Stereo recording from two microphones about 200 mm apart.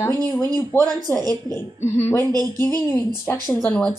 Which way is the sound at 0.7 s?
10° left (ahead or behind).